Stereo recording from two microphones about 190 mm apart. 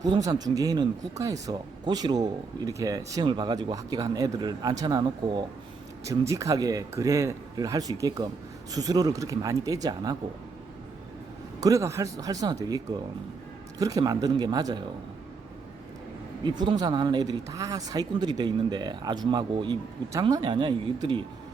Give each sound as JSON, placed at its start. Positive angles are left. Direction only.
{"t": 0.0, "sound": "speech", "side_deg": -20}
{"t": 11.6, "sound": "speech", "side_deg": -15}
{"t": 16.4, "sound": "speech", "side_deg": -25}